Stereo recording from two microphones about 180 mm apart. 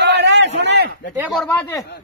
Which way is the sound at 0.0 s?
75° right (ahead or behind).